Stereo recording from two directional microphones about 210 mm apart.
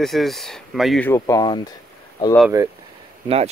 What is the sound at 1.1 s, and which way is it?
Speech, 15° left (ahead or behind).